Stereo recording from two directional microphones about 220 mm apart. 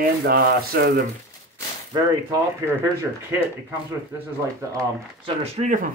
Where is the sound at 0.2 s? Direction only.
45° right (ahead or behind).